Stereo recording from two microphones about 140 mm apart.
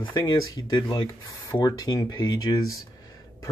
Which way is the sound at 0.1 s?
30° left (ahead or behind).